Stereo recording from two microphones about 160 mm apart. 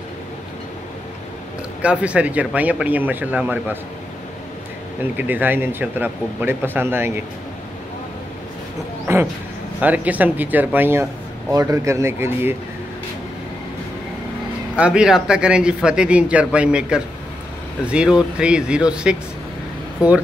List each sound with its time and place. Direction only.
1.8 s speech: 10° right (ahead or behind)
5.1 s speech: 10° right (ahead or behind)
9.0 s a sound: 15° right (ahead or behind)
9.8 s speech: 10° right (ahead or behind)
14.8 s speech: 5° right (ahead or behind)